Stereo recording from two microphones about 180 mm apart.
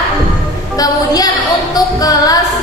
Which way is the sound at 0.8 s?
20° left (ahead or behind).